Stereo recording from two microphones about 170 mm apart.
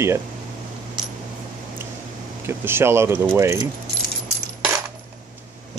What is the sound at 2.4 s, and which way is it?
Speech, 15° right (ahead or behind).